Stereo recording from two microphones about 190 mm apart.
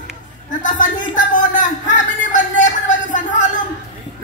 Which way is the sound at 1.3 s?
40° left (ahead or behind).